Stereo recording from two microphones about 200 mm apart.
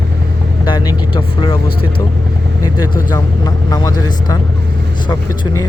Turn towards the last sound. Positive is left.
turn(degrees=20)  # may be behind; listen again after turning